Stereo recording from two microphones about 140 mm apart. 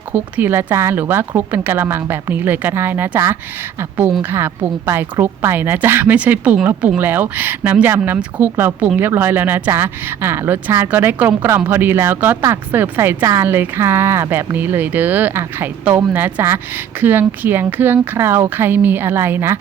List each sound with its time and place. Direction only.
0.1 s speech: 15° right (ahead or behind)